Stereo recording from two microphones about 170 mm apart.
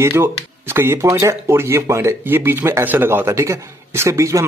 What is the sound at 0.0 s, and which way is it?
Speech, 15° right (ahead or behind).